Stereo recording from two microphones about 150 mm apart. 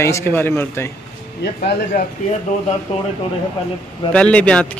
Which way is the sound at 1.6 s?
65° left (ahead or behind).